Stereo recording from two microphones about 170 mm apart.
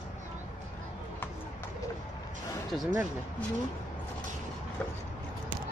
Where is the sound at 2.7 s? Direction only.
Centre (ahead or behind).